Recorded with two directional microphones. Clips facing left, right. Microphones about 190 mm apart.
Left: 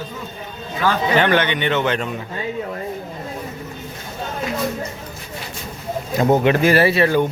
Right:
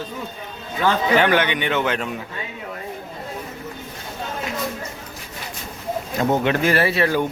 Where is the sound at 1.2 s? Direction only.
10° right (ahead or behind).